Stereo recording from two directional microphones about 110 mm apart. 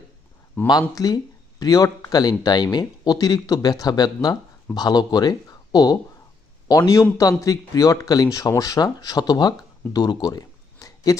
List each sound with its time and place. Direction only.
0.7 s a man's voice: 35° left (ahead or behind)